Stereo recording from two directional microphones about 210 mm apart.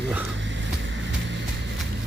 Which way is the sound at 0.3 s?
60° right (ahead or behind).